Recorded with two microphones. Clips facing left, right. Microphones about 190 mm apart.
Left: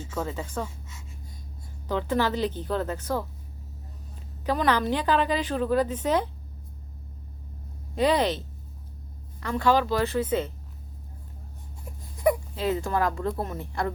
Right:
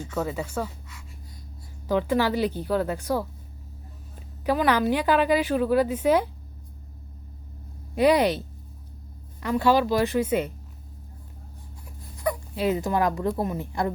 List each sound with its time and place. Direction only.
0.3 s a woman's voice: 10° right (ahead or behind)
1.9 s a woman's voice: 10° right (ahead or behind)
4.4 s a woman's voice: 10° right (ahead or behind)
7.9 s a woman's voice: 10° right (ahead or behind)
12.1 s a sound: 20° left (ahead or behind)
12.5 s a woman's voice: 15° right (ahead or behind)